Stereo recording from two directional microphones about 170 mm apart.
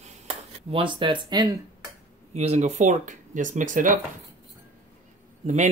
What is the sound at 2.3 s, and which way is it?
Speech, 40° right (ahead or behind).